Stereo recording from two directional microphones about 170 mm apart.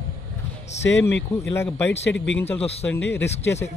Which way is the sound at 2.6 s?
35° left (ahead or behind).